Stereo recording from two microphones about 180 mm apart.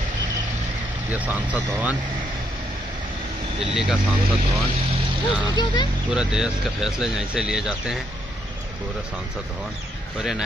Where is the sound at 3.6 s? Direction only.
5° right (ahead or behind).